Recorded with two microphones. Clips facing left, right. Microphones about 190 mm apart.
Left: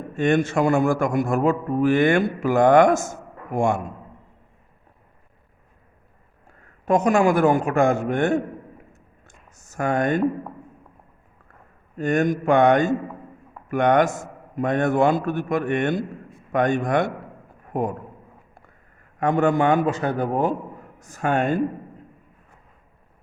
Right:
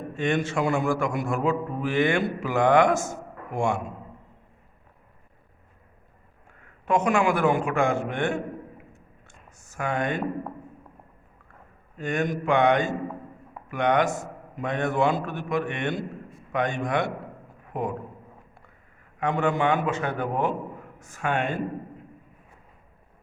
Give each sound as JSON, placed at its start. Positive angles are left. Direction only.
{"t": 0.2, "sound": "a man's voice", "side_deg": 45}
{"t": 6.5, "sound": "a man's voice", "side_deg": 40}
{"t": 8.9, "sound": "a sound", "side_deg": 45}
{"t": 11.9, "sound": "a man's voice", "side_deg": 45}
{"t": 17.7, "sound": "a sound", "side_deg": 45}
{"t": 19.2, "sound": "a man's voice", "side_deg": 45}